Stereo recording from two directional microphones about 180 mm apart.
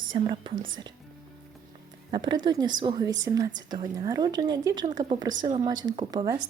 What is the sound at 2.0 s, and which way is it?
Speech, 25° right (ahead or behind).